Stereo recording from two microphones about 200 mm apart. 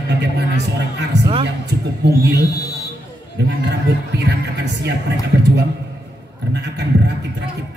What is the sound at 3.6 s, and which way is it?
A man's voice, 60° right (ahead or behind).